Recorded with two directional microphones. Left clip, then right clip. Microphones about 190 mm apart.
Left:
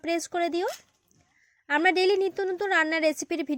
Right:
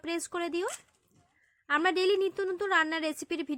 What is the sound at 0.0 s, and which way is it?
Speech, 20° left (ahead or behind).